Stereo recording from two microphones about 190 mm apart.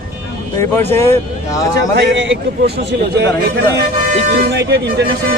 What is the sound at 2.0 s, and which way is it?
Speech, 65° right (ahead or behind).